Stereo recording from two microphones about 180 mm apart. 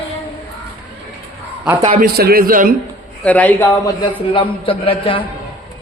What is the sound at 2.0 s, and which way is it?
Speech, 55° right (ahead or behind).